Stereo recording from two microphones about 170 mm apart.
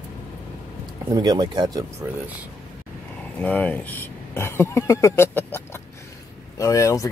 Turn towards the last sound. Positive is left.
turn(degrees=20)  # may be behind; listen again after turning